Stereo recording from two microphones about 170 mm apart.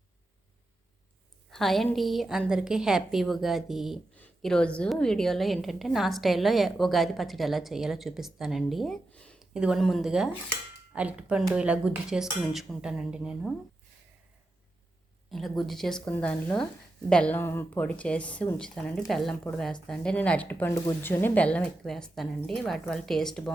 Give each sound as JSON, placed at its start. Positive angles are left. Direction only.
{"t": 1.5, "sound": "a woman's voice", "side_deg": 0}
{"t": 15.3, "sound": "a woman's voice", "side_deg": 0}